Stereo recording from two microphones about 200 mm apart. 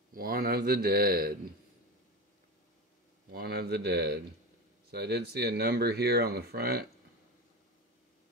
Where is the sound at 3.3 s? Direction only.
50° right (ahead or behind).